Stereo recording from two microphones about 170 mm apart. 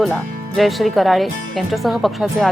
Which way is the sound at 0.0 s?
Centre (ahead or behind).